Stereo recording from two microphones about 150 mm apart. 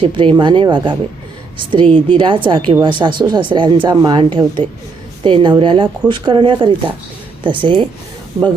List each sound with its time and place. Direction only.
0.0 s speech: 35° right (ahead or behind)